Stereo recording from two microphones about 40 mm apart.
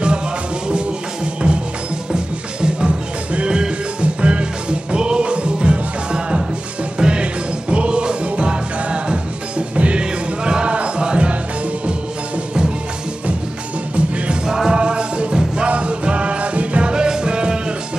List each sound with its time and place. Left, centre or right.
0.7 s music: right
13.9 s music: right
14.4 s music: centre
16.9 s music: right